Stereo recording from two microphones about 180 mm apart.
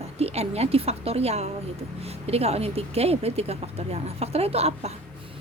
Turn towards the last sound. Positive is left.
turn(degrees=-35)  # may be behind; listen again after turning